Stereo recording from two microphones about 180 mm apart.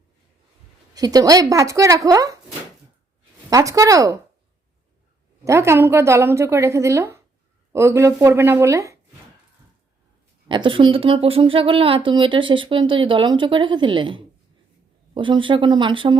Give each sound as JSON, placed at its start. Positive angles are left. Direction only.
{"t": 0.9, "sound": "speech", "side_deg": -20}
{"t": 3.5, "sound": "a woman's voice", "side_deg": -20}
{"t": 5.5, "sound": "a woman's voice", "side_deg": -15}
{"t": 10.5, "sound": "speech", "side_deg": -30}